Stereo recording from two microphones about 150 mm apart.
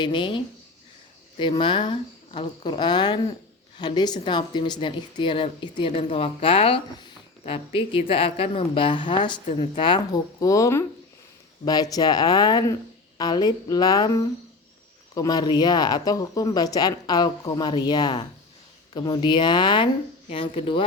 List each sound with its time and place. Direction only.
0.0 s speech: 35° left (ahead or behind)